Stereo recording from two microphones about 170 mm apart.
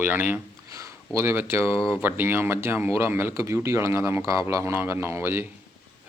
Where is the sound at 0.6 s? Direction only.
20° right (ahead or behind).